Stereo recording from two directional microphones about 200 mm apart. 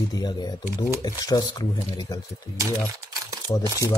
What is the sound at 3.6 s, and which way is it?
Speech, 15° right (ahead or behind).